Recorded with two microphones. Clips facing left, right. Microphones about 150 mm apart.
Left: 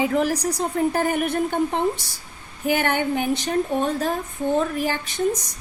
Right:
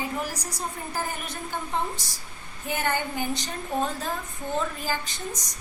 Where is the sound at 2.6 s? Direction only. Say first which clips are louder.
Left 7 dB; 70° left (ahead or behind).